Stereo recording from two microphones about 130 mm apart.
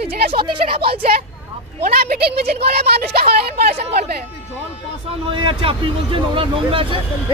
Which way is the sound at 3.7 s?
55° right (ahead or behind).